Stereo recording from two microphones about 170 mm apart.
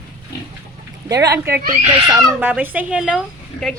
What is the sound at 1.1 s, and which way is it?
Speech, 20° right (ahead or behind).